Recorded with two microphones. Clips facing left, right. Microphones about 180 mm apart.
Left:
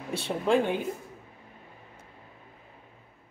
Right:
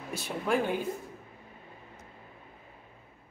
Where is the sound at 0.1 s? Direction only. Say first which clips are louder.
Left 5 dB; 30° left (ahead or behind).